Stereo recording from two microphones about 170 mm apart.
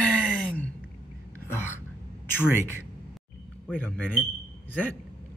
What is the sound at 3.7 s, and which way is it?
Speech, 10° left (ahead or behind).